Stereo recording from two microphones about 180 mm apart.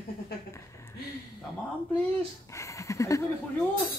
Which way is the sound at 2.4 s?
15° left (ahead or behind).